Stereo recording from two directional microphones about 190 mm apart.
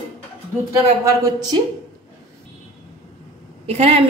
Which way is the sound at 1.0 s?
20° right (ahead or behind).